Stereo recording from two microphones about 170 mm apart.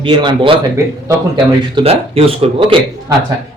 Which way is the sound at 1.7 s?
35° right (ahead or behind).